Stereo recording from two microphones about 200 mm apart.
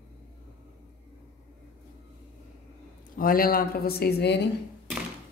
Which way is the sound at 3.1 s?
45° left (ahead or behind).